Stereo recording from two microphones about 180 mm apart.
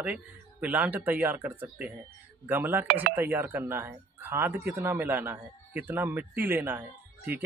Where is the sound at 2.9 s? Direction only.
55° right (ahead or behind).